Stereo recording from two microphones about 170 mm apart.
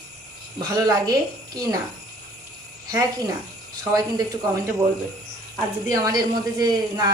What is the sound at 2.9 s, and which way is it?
Speech, 20° right (ahead or behind).